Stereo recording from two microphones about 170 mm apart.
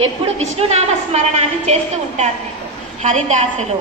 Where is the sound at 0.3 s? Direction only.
40° right (ahead or behind).